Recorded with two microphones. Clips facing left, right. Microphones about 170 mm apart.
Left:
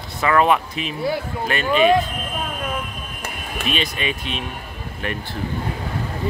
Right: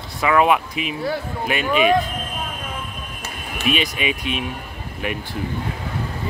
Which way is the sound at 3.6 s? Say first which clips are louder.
Right 3 dB; 10° right (ahead or behind).